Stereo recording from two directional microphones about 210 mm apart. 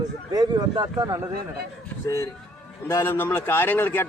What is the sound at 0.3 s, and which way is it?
Speech, 20° right (ahead or behind).